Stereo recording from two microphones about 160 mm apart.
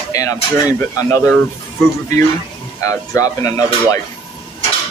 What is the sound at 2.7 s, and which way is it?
Speech, 20° left (ahead or behind).